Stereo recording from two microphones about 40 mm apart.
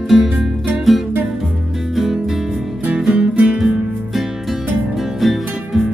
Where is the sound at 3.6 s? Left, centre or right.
Centre.